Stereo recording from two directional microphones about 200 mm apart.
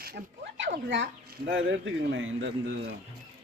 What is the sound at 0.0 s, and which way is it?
Speech, 55° right (ahead or behind).